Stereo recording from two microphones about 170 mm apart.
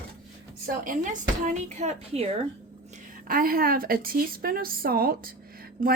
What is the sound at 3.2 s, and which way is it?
A woman's voice, 60° right (ahead or behind).